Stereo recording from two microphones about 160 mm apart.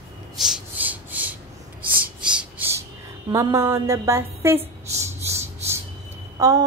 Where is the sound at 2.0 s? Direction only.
5° right (ahead or behind).